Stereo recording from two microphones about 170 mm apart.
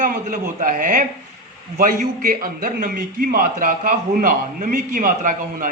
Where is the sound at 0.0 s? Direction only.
55° right (ahead or behind).